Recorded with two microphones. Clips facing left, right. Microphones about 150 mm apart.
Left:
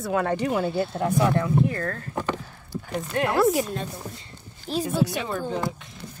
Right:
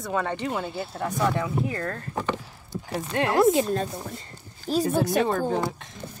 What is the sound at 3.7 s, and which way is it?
Speech, 40° right (ahead or behind).